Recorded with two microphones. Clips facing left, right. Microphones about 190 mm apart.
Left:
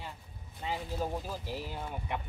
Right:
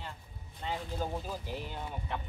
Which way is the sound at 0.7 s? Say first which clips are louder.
Left 1 dB; 5° left (ahead or behind).